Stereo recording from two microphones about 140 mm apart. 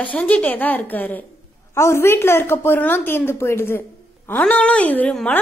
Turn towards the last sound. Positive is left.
turn(degrees=10)  # may be behind; listen again after turning